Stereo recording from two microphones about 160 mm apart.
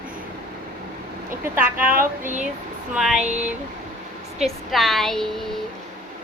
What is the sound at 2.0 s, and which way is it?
Speech, 55° right (ahead or behind).